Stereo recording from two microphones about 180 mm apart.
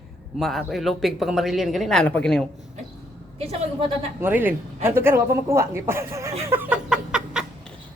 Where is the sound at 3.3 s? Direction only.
35° right (ahead or behind).